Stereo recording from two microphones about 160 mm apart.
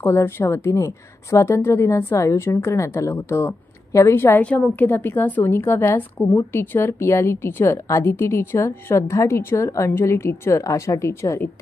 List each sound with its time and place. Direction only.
0.0 s a woman's voice: 15° left (ahead or behind)